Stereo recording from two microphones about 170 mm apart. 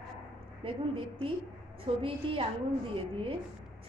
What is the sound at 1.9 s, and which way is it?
Speech, 35° right (ahead or behind).